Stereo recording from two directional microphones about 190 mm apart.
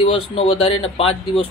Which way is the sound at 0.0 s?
30° left (ahead or behind).